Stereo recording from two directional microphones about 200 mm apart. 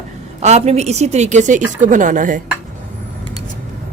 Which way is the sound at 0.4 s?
35° right (ahead or behind).